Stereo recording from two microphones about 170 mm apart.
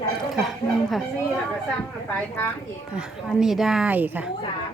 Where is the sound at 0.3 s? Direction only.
Centre (ahead or behind).